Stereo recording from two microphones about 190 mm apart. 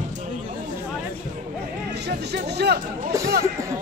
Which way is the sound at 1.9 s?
60° right (ahead or behind).